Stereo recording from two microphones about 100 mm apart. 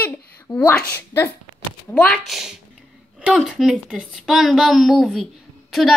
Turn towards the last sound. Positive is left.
turn(degrees=0)  # may be behind; listen again after turning